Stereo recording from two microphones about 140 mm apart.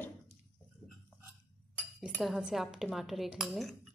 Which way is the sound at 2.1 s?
Centre (ahead or behind).